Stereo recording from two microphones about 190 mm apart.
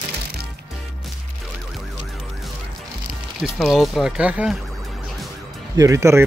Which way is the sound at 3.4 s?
Centre (ahead or behind).